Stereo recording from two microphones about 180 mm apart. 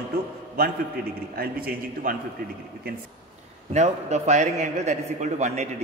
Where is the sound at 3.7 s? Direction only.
40° right (ahead or behind).